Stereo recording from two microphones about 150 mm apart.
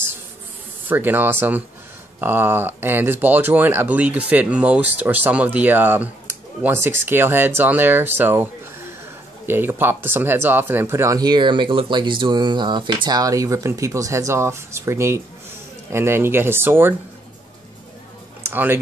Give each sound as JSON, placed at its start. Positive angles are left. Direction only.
{"t": 0.8, "sound": "speech", "side_deg": -15}
{"t": 9.5, "sound": "speech", "side_deg": -15}
{"t": 18.4, "sound": "speech", "side_deg": -15}